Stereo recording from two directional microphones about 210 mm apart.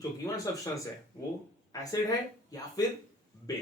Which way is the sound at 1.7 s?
15° left (ahead or behind).